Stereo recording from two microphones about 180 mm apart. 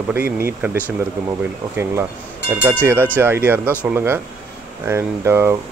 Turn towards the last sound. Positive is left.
turn(degrees=-15)  # may be behind; listen again after turning